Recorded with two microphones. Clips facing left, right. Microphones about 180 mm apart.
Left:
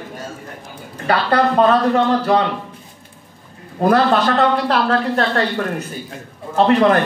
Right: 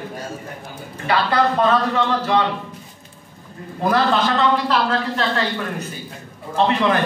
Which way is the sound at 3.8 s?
55° left (ahead or behind).